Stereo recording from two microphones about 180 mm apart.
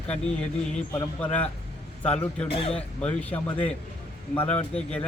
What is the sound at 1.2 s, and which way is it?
Speech, 5° left (ahead or behind).